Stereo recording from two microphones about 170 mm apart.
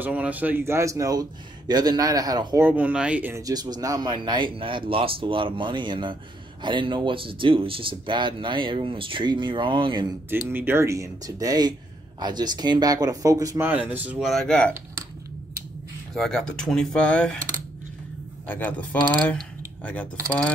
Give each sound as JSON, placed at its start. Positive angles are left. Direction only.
{"t": 0.0, "sound": "speech", "side_deg": -10}
{"t": 2.6, "sound": "speech", "side_deg": -10}
{"t": 10.5, "sound": "speech", "side_deg": -10}
{"t": 14.3, "sound": "speech", "side_deg": 5}
{"t": 16.2, "sound": "speech", "side_deg": 5}
{"t": 18.5, "sound": "speech", "side_deg": 10}